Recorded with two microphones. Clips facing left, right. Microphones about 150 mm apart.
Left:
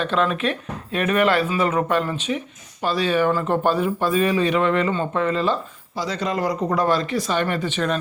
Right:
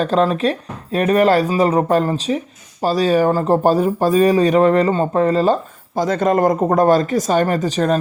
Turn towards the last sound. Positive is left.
turn(degrees=-40)  # may be behind; listen again after turning